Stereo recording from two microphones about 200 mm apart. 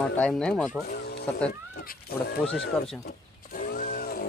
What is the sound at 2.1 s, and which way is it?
Speech, 50° left (ahead or behind).